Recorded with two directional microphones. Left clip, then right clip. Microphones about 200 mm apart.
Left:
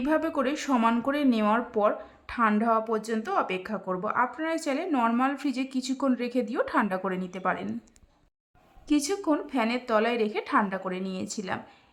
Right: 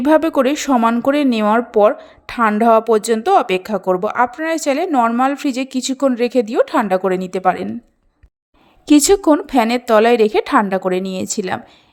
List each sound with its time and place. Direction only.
0.0 s speech: 40° right (ahead or behind)
8.9 s speech: 40° right (ahead or behind)